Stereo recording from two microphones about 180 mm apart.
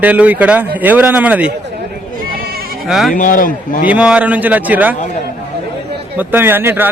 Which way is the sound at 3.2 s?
50° left (ahead or behind).